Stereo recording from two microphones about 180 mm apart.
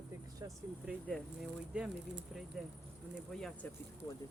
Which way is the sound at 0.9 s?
Centre (ahead or behind).